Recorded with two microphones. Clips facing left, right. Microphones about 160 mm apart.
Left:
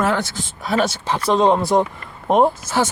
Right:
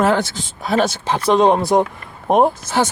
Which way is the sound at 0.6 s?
20° right (ahead or behind).